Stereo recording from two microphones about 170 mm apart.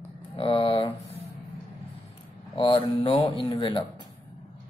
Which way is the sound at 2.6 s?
30° left (ahead or behind).